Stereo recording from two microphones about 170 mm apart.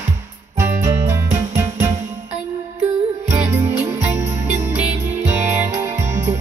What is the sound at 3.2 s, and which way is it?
Music, 15° right (ahead or behind).